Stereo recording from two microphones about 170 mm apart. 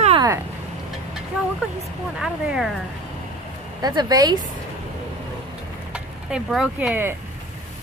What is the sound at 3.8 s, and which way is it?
Speech, 25° right (ahead or behind).